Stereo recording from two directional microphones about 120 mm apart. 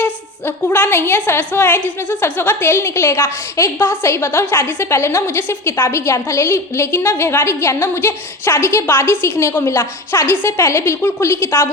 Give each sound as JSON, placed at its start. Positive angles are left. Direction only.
{"t": 0.0, "sound": "a woman's voice", "side_deg": 15}